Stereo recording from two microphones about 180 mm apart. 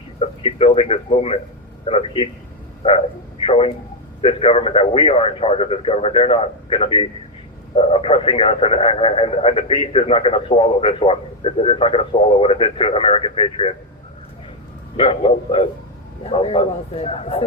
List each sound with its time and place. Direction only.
0.2 s speech: 35° left (ahead or behind)
3.4 s speech: 30° left (ahead or behind)
14.9 s speech: 30° left (ahead or behind)